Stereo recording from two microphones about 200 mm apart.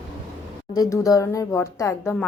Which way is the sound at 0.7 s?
15° left (ahead or behind).